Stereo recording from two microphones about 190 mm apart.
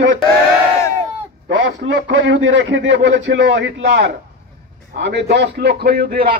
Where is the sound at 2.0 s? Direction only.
75° right (ahead or behind); by 6.4 s 50° right (ahead or behind).